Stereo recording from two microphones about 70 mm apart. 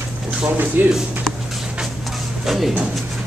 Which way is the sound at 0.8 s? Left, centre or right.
Right.